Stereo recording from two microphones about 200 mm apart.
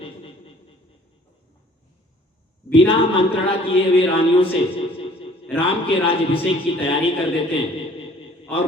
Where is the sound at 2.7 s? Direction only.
30° left (ahead or behind).